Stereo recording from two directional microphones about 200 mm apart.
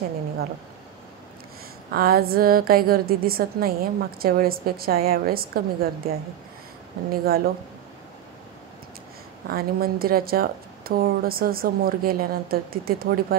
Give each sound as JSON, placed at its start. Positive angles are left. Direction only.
{"t": 1.9, "sound": "a woman's voice", "side_deg": -50}
{"t": 9.5, "sound": "a woman's voice", "side_deg": -50}